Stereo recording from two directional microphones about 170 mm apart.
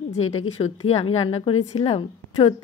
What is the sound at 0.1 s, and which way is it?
Speech, 40° left (ahead or behind).